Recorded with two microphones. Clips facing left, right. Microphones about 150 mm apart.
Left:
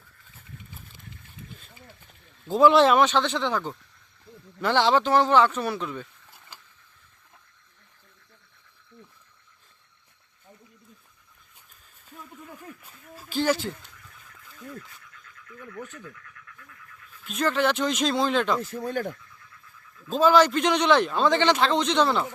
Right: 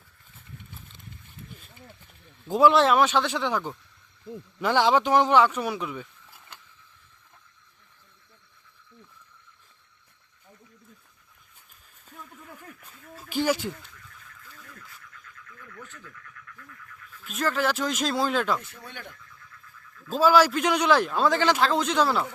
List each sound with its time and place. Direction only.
2.5 s speech: 5° right (ahead or behind)
12.1 s speech: 5° left (ahead or behind)
13.1 s speech: 15° right (ahead or behind)
15.4 s speech: 25° left (ahead or behind)
17.2 s a man's voice: centre (ahead or behind)
18.6 s speech: 40° left (ahead or behind)
20.1 s a man's voice: 5° right (ahead or behind)